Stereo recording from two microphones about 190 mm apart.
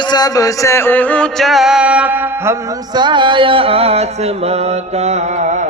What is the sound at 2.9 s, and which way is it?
Music, 25° right (ahead or behind).